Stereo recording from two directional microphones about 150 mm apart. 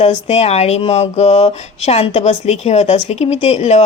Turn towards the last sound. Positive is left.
turn(degrees=50)  # may be behind; listen again after turning